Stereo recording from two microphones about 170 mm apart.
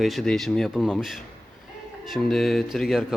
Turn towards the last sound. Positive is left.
turn(degrees=0)  # may be behind; listen again after turning